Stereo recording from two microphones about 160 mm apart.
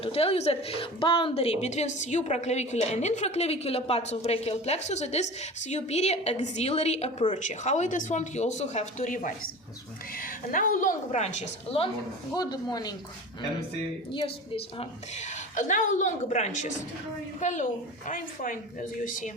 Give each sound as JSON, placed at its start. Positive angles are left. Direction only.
{"t": 0.0, "sound": "a woman's voice", "side_deg": 35}
{"t": 12.3, "sound": "speech", "side_deg": 25}
{"t": 14.1, "sound": "a woman's voice", "side_deg": 35}